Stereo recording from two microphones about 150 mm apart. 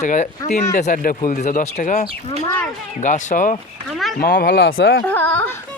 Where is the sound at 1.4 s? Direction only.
65° left (ahead or behind).